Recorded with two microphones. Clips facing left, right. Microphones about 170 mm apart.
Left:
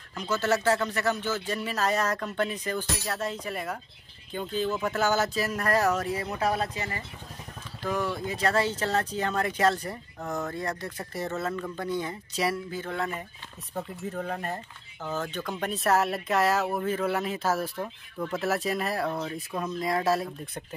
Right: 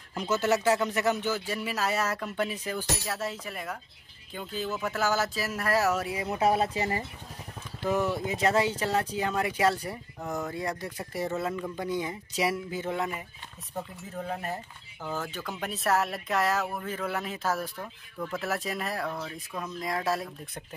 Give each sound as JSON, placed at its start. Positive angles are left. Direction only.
{"t": 0.3, "sound": "speech", "side_deg": -15}
{"t": 6.3, "sound": "speech", "side_deg": -25}
{"t": 14.3, "sound": "speech", "side_deg": -10}
{"t": 16.4, "sound": "speech", "side_deg": 30}
{"t": 18.6, "sound": "speech", "side_deg": 0}
{"t": 18.9, "sound": "speech", "side_deg": 25}
{"t": 19.8, "sound": "speech", "side_deg": 0}